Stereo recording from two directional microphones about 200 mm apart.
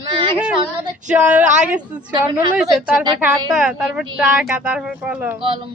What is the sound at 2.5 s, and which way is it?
A woman's voice, 5° right (ahead or behind).